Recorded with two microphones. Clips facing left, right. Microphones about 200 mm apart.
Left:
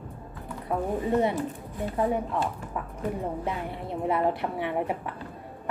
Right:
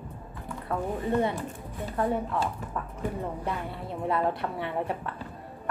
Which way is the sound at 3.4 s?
20° left (ahead or behind).